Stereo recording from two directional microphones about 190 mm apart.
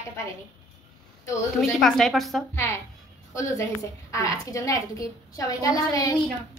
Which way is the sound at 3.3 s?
15° left (ahead or behind).